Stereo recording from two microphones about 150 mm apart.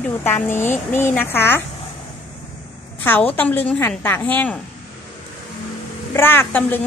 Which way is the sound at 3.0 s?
10° left (ahead or behind).